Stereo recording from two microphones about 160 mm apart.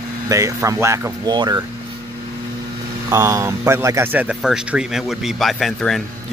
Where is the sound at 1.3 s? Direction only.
30° right (ahead or behind).